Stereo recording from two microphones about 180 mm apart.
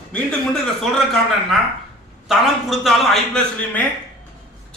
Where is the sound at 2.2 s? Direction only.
Centre (ahead or behind).